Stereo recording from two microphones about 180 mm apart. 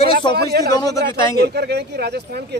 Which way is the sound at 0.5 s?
60° right (ahead or behind).